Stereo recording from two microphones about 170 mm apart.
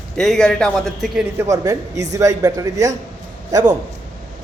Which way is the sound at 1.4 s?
20° right (ahead or behind).